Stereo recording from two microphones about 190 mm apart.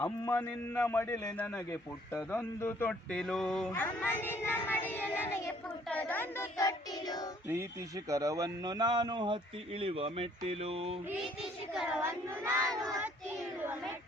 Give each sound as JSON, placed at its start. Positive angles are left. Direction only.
{"t": 0.0, "sound": "speech", "side_deg": 10}
{"t": 8.1, "sound": "a man's voice", "side_deg": -15}
{"t": 11.7, "sound": "speech", "side_deg": -5}
{"t": 12.0, "sound": "crowd", "side_deg": -15}